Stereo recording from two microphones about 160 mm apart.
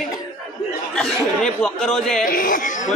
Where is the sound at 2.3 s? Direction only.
55° left (ahead or behind).